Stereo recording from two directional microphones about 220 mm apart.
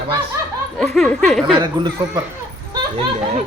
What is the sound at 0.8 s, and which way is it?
Speech, centre (ahead or behind).